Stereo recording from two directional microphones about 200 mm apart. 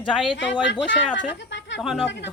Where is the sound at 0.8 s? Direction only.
60° left (ahead or behind).